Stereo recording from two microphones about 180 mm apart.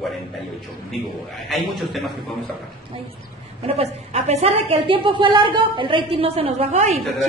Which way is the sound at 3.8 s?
35° right (ahead or behind).